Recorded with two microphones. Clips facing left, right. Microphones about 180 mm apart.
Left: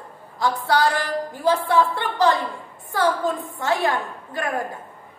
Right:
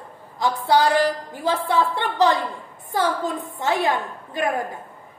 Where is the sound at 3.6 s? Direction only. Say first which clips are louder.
Right 1 dB; 20° right (ahead or behind).